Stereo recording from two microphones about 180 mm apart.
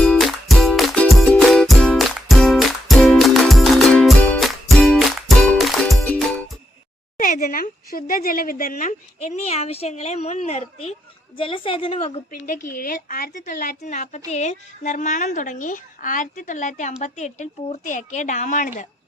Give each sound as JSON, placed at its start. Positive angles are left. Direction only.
{"t": 0.0, "sound": "music", "side_deg": 0}
{"t": 7.2, "sound": "a woman's voice", "side_deg": 55}
{"t": 11.3, "sound": "a woman's voice", "side_deg": 30}
{"t": 12.3, "sound": "a woman's voice", "side_deg": 50}